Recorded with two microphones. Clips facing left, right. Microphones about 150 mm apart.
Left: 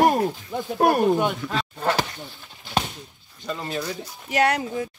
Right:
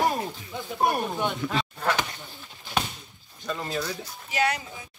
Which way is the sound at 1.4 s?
Centre (ahead or behind).